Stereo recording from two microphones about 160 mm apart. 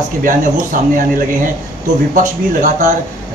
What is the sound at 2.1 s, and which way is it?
Speech, 50° right (ahead or behind).